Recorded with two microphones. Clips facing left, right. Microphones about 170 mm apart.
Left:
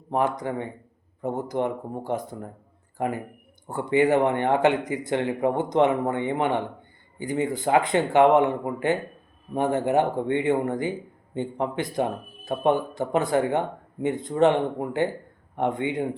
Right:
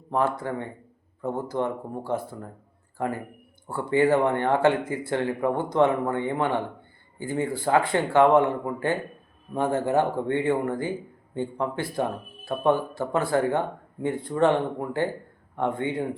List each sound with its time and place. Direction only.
0.1 s speech: 15° left (ahead or behind)